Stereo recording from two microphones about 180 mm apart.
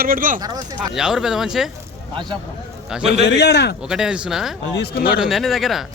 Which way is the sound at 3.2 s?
70° left (ahead or behind).